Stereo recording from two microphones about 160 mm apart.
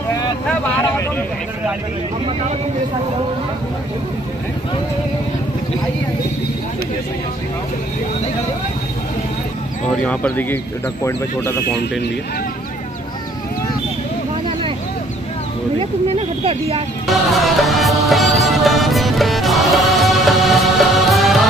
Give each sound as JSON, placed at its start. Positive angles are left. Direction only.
{"t": 0.5, "sound": "vehicle", "side_deg": 10}
{"t": 9.8, "sound": "speech", "side_deg": 10}
{"t": 15.8, "sound": "speech", "side_deg": -40}
{"t": 17.1, "sound": "music", "side_deg": 0}